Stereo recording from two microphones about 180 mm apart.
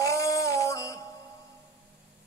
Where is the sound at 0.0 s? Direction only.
15° left (ahead or behind).